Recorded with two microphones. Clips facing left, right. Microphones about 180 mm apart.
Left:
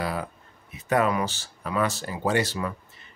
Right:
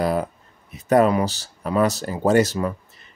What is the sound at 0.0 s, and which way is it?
Speech, 45° right (ahead or behind).